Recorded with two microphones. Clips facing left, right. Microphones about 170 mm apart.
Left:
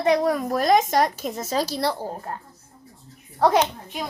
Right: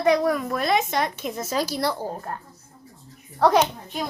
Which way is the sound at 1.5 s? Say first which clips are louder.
Left 1 dB; 30° left (ahead or behind).